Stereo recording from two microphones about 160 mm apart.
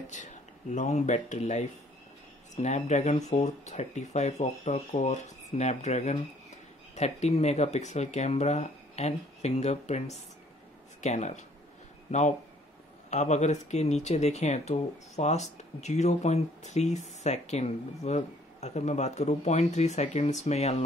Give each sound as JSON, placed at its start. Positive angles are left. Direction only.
{"t": 0.1, "sound": "speech", "side_deg": 50}